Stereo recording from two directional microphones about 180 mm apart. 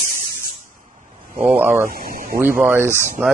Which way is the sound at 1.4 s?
10° right (ahead or behind).